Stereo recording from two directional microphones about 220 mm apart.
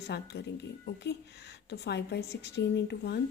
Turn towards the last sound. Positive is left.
turn(degrees=50)  # may be behind; listen again after turning